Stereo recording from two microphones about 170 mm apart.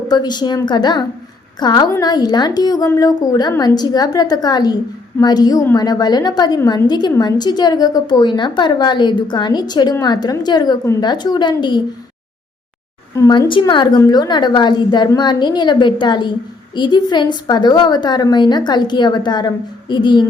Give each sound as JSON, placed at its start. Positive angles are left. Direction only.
{"t": 0.1, "sound": "a woman's voice", "side_deg": 25}
{"t": 13.1, "sound": "a woman's voice", "side_deg": 20}